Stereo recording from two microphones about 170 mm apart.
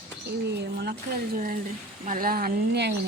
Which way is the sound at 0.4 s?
75° right (ahead or behind).